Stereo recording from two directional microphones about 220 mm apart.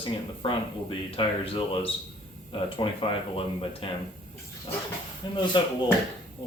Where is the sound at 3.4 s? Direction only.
25° left (ahead or behind).